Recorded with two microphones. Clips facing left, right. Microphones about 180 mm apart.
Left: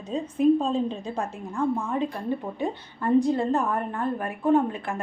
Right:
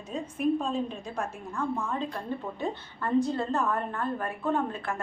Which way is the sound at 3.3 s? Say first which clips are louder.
Left 4 dB; 15° left (ahead or behind).